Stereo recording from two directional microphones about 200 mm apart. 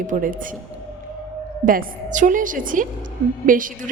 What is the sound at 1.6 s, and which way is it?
A woman's voice, 40° right (ahead or behind).